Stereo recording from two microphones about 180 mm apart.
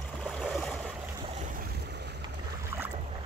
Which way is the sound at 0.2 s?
Centre (ahead or behind).